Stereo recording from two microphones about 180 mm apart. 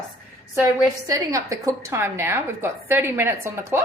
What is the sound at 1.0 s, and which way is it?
A woman's voice, 20° right (ahead or behind).